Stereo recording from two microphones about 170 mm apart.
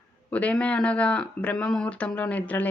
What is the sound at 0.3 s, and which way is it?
Speech, 10° left (ahead or behind).